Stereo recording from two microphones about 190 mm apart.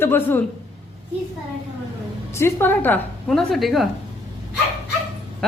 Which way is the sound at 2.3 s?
15° left (ahead or behind).